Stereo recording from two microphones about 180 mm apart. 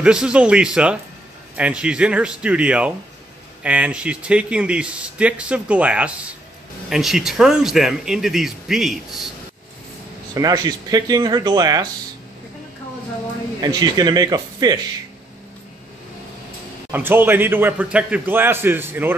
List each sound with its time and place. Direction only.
0.0 s speech: 5° right (ahead or behind)
10.3 s speech: 20° right (ahead or behind)
13.6 s speech: 20° right (ahead or behind)
16.9 s speech: 10° right (ahead or behind)